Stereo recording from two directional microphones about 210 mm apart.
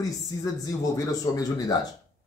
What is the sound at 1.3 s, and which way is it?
Speech, 15° left (ahead or behind).